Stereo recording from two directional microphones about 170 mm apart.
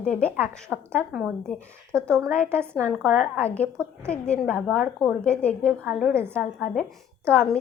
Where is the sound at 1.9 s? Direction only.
15° right (ahead or behind).